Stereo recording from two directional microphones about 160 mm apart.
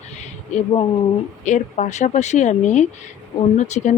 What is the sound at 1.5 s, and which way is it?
Speech, 50° left (ahead or behind).